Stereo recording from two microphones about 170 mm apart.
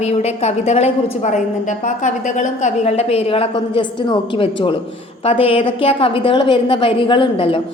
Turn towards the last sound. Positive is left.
turn(degrees=30)  # may be behind; listen again after turning